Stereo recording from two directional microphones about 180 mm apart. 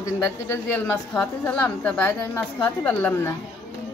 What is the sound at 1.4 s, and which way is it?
A woman's voice, 10° left (ahead or behind).